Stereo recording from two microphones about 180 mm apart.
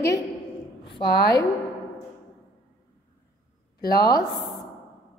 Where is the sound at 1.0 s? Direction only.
65° left (ahead or behind).